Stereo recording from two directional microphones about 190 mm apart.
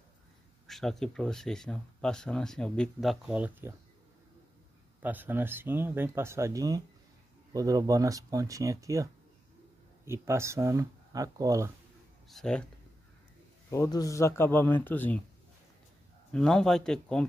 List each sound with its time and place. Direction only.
0.7 s speech: centre (ahead or behind)
5.0 s speech: 10° right (ahead or behind)
12.3 s speech: 5° left (ahead or behind)
13.7 s speech: 15° left (ahead or behind)
16.3 s speech: 5° left (ahead or behind)